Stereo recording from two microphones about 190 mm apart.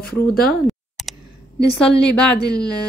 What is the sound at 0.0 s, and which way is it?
Speech, 55° left (ahead or behind).